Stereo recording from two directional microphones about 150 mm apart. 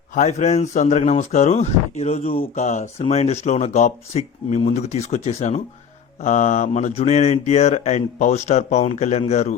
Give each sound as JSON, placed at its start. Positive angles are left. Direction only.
{"t": 0.1, "sound": "speech", "side_deg": 50}